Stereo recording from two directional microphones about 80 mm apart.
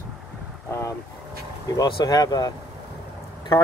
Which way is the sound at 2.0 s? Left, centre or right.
Left.